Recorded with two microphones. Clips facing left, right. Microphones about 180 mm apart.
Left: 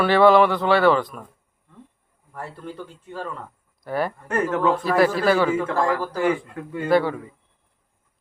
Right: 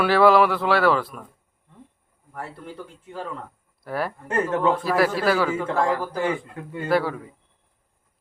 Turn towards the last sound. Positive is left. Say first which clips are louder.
# left 3 dB
turn(degrees=-5)  # may be behind; listen again after turning